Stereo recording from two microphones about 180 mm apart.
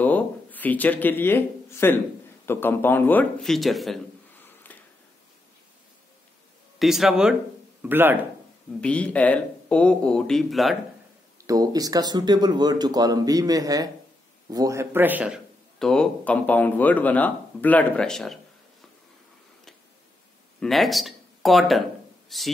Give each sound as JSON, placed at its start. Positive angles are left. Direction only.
{"t": 0.0, "sound": "a sound", "side_deg": 10}
{"t": 2.4, "sound": "speech", "side_deg": 10}
{"t": 4.7, "sound": "a sound", "side_deg": 10}
{"t": 6.8, "sound": "a man's voice", "side_deg": 0}
{"t": 8.8, "sound": "speech", "side_deg": 5}
{"t": 11.4, "sound": "a man's voice", "side_deg": -20}
{"t": 20.6, "sound": "a man's voice", "side_deg": 0}